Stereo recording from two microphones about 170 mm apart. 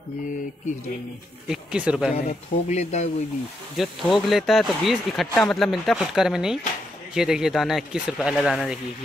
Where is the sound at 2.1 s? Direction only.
45° left (ahead or behind).